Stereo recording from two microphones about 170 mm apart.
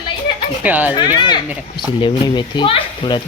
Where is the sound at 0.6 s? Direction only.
10° right (ahead or behind).